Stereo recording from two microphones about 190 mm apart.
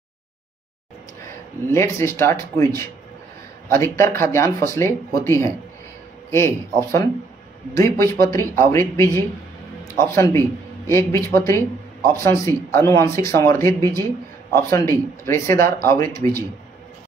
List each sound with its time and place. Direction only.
1.7 s speech: 15° left (ahead or behind)